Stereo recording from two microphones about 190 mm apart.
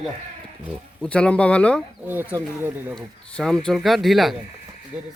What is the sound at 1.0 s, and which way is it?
Speech, 5° left (ahead or behind).